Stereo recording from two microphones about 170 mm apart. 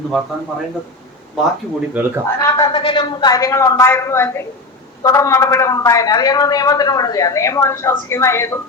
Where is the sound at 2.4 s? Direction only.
20° left (ahead or behind).